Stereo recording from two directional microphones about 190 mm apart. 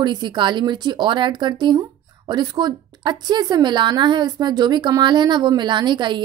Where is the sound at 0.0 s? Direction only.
25° right (ahead or behind).